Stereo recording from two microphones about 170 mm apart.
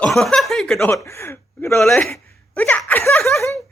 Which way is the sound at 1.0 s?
15° left (ahead or behind).